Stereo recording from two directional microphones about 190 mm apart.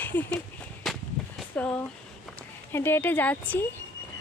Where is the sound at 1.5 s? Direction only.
10° left (ahead or behind).